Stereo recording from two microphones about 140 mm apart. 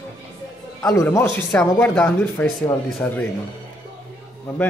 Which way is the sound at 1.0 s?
15° left (ahead or behind).